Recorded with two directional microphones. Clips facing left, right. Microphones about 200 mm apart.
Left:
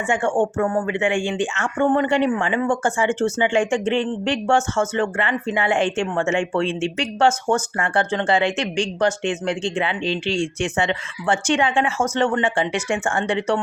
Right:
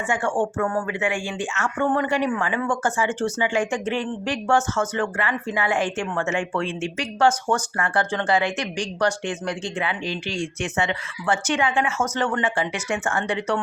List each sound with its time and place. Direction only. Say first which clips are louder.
0.1 s speech: left 4 dB; 25° left (ahead or behind)